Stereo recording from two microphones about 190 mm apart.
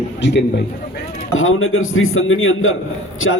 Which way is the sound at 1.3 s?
90° left.